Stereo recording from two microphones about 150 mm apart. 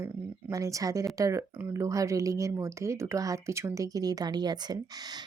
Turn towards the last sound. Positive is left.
turn(degrees=-30)  # may be behind; listen again after turning